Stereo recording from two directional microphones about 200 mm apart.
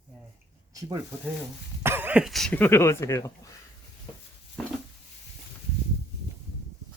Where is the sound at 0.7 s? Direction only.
15° right (ahead or behind); by 3.5 s 15° left (ahead or behind).